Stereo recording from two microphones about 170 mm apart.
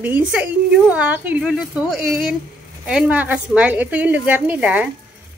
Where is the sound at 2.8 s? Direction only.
5° right (ahead or behind).